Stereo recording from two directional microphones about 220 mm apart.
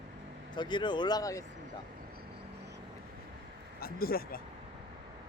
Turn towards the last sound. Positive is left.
turn(degrees=40)  # may be behind; listen again after turning